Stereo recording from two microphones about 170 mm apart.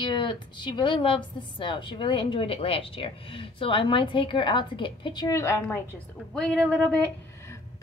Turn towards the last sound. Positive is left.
turn(degrees=5)  # may be behind; listen again after turning